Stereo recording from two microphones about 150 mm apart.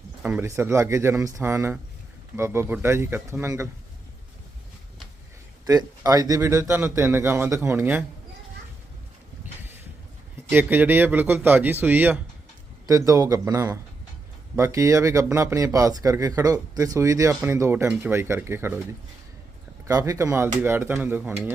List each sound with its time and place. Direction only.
0.2 s a man's voice: 10° right (ahead or behind)
5.6 s a man's voice: 25° right (ahead or behind)
10.5 s a man's voice: 15° right (ahead or behind)
12.9 s a man's voice: 25° right (ahead or behind)